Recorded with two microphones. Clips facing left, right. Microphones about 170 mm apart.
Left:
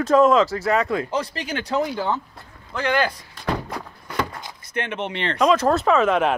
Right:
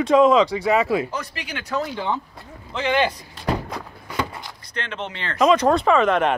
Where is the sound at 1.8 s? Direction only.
10° left (ahead or behind).